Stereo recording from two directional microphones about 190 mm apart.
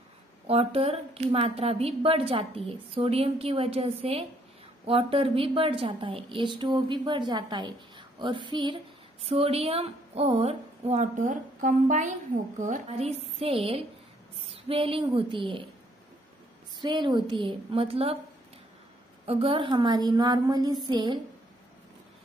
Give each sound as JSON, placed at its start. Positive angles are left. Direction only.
{"t": 0.5, "sound": "a woman's voice", "side_deg": -30}
{"t": 16.8, "sound": "a woman's voice", "side_deg": -25}
{"t": 19.2, "sound": "a woman's voice", "side_deg": -30}